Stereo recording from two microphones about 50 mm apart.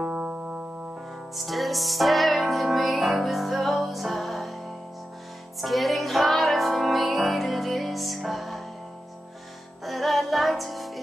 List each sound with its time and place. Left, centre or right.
0.2 s music: centre
1.3 s music: centre
9.8 s music: centre